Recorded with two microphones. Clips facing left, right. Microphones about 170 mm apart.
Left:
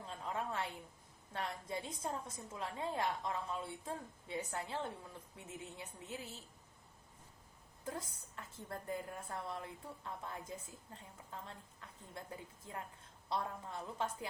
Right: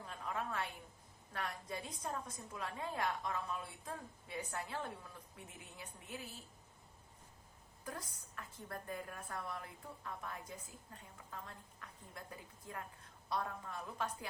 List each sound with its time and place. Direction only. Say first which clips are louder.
0.1 s a sound: left 1 dB; 25° left (ahead or behind)
1.3 s a woman's voice: left 2 dB; 25° left (ahead or behind)
7.9 s a woman's voice: left 3 dB; 25° left (ahead or behind)
11.4 s a woman's voice: left 1 dB; 25° left (ahead or behind)